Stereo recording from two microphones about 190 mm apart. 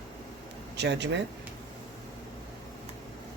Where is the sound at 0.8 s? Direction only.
65° right (ahead or behind).